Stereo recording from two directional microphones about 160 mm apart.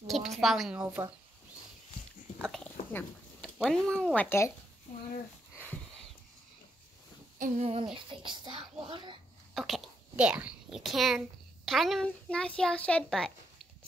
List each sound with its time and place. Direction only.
0.0 s a woman's voice: centre (ahead or behind)
2.5 s a sound: 10° left (ahead or behind)
3.5 s speech: centre (ahead or behind)
7.3 s a child's voice: 50° right (ahead or behind); by 9.2 s 30° right (ahead or behind)
9.5 s a child's voice: centre (ahead or behind)